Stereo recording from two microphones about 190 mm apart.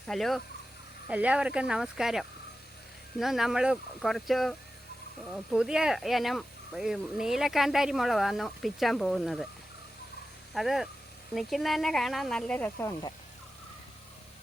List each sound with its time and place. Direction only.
0.1 s speech: centre (ahead or behind)
10.5 s speech: centre (ahead or behind)